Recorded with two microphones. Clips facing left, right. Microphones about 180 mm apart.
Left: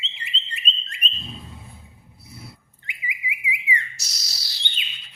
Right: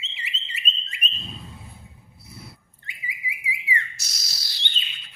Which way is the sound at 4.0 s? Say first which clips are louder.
Even; 50° right (ahead or behind).